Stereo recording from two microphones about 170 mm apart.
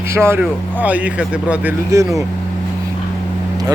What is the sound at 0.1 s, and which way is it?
Speech, 15° right (ahead or behind).